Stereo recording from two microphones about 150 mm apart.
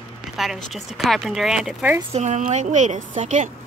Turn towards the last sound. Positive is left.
turn(degrees=-55)  # may be behind; listen again after turning